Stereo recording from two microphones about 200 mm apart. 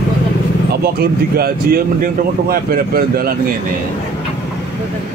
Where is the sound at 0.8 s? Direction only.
50° right (ahead or behind).